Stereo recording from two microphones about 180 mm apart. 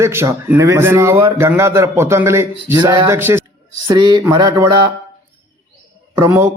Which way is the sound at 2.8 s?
25° right (ahead or behind).